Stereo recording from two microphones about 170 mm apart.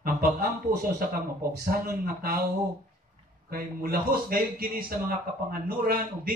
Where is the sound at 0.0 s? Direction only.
60° right (ahead or behind).